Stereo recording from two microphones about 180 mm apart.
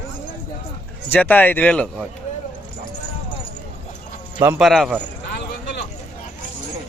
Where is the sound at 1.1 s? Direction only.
10° left (ahead or behind).